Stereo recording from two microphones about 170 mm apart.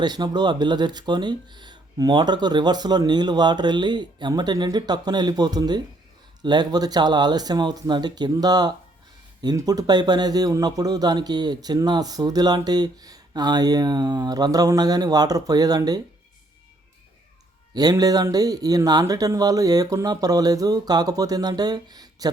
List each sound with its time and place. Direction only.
0.0 s a man's voice: 25° right (ahead or behind)
17.7 s a man's voice: 20° right (ahead or behind)